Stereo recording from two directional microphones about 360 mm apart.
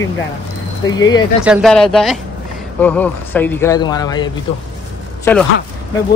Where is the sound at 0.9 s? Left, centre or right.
Centre.